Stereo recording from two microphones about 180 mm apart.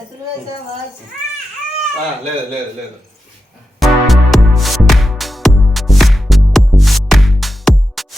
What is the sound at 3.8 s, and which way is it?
Music, centre (ahead or behind).